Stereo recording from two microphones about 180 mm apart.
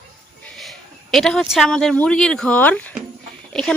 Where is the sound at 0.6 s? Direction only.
Centre (ahead or behind).